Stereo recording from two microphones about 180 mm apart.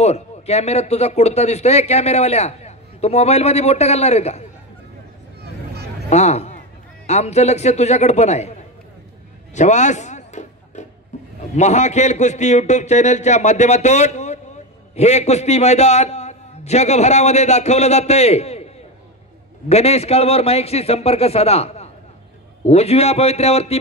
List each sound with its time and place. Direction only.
0.0 s speech: 35° left (ahead or behind)
6.0 s speech: 40° left (ahead or behind)
9.5 s music: 40° left (ahead or behind)
11.5 s speech: 40° left (ahead or behind)
19.7 s speech: 35° left (ahead or behind)